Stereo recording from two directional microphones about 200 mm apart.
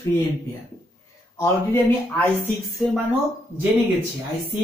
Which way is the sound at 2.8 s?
Centre (ahead or behind).